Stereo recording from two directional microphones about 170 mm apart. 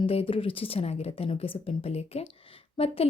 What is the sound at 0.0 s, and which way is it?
A woman's voice, 35° left (ahead or behind).